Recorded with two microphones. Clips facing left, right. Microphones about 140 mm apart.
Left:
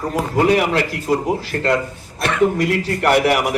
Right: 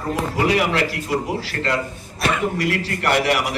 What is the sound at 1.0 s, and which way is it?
A man's voice, 45° left (ahead or behind).